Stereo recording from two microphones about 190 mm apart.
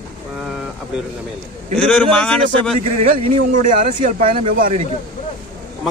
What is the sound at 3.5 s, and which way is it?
Speech, 45° right (ahead or behind).